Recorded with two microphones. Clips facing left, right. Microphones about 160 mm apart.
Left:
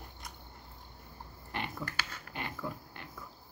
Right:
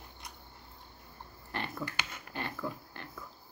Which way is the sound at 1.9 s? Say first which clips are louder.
Even; 15° right (ahead or behind).